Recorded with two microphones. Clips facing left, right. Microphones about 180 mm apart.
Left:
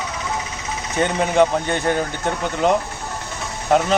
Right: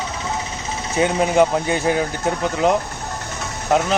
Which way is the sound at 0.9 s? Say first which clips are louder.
Right 1 dB; 5° right (ahead or behind).